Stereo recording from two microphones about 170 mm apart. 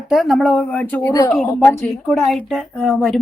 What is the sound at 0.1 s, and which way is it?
Speech, centre (ahead or behind).